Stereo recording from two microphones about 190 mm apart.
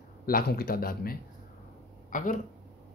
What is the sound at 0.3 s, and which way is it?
Speech, 55° left (ahead or behind).